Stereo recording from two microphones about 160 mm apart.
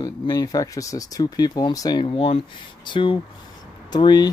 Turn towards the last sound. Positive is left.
turn(degrees=25)  # may be behind; listen again after turning